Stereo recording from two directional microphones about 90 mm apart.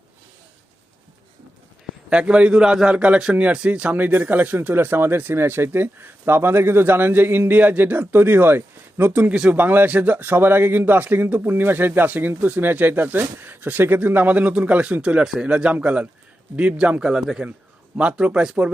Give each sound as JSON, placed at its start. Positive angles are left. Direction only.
{"t": 2.0, "sound": "a man's voice", "side_deg": -15}
{"t": 9.3, "sound": "a man's voice", "side_deg": -10}
{"t": 9.6, "sound": "a man's voice", "side_deg": -20}